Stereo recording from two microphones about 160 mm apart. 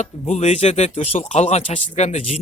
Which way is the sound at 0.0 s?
45° left (ahead or behind).